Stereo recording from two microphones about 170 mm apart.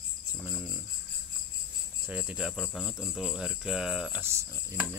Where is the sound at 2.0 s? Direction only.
5° right (ahead or behind).